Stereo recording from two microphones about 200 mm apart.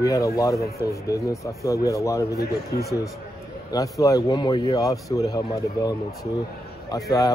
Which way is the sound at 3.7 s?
15° left (ahead or behind).